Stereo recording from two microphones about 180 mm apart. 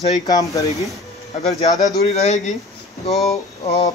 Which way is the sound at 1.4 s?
35° left (ahead or behind).